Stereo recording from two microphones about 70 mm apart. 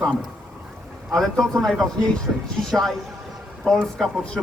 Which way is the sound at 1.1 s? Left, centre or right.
Centre.